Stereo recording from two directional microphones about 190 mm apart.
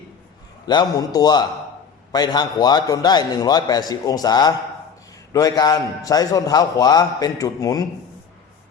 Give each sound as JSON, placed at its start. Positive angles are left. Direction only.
{"t": 0.6, "sound": "a man's voice", "side_deg": 20}